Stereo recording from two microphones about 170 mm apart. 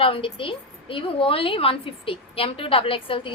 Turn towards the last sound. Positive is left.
turn(degrees=30)  # may be behind; listen again after turning